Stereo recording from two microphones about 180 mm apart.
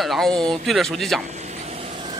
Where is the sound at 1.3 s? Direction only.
40° right (ahead or behind).